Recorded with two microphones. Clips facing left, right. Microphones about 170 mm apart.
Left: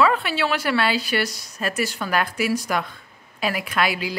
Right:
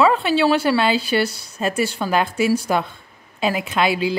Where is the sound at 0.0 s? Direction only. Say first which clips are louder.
Right 4 dB; 30° right (ahead or behind).